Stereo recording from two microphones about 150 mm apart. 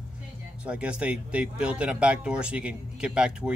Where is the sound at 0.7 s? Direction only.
5° right (ahead or behind).